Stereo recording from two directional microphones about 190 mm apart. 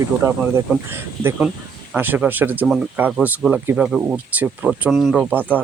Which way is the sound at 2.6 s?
Centre (ahead or behind).